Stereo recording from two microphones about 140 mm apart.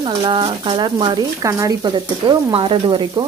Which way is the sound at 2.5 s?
40° right (ahead or behind).